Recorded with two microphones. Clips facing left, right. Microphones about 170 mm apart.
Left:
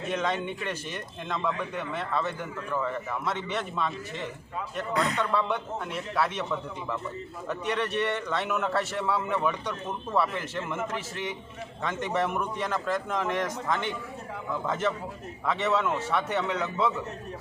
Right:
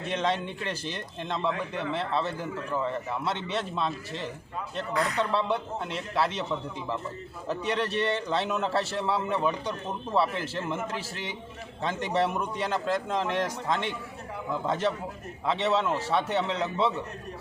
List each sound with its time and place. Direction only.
0.1 s a man's voice: 30° right (ahead or behind)
3.5 s a man's voice: 30° right (ahead or behind)